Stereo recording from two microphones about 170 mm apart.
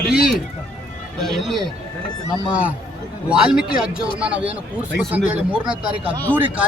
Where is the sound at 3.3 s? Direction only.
5° right (ahead or behind).